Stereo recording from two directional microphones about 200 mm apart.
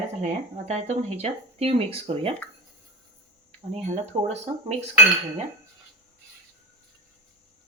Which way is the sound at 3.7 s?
35° right (ahead or behind).